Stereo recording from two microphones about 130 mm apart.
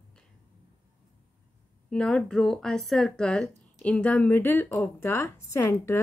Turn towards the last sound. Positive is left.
turn(degrees=20)  # may be behind; listen again after turning